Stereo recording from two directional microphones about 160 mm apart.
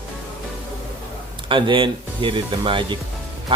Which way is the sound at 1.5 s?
30° right (ahead or behind).